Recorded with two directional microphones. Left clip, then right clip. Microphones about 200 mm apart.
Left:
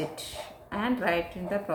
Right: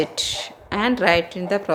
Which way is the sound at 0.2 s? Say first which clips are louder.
Right 14 dB; 45° right (ahead or behind).